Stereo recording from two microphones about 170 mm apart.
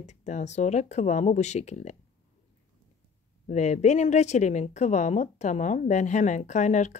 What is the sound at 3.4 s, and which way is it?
Speech, 45° left (ahead or behind).